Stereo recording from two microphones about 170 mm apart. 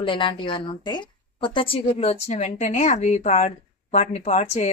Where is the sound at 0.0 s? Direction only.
30° left (ahead or behind).